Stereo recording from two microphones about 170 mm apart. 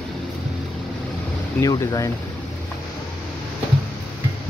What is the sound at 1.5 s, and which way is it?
Speech, 20° left (ahead or behind).